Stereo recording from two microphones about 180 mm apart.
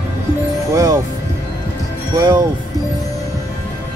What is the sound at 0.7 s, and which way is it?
Speech, 20° right (ahead or behind).